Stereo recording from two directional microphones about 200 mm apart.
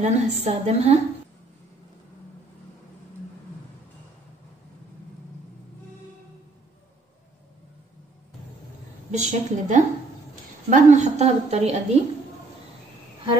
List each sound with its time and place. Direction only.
0.0 s a woman's voice: 35° right (ahead or behind)
9.1 s a woman's voice: 35° right (ahead or behind)